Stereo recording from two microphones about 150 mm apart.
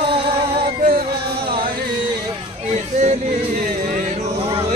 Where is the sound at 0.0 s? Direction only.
35° right (ahead or behind).